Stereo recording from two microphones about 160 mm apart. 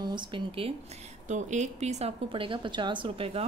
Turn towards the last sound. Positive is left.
turn(degrees=-35)  # may be behind; listen again after turning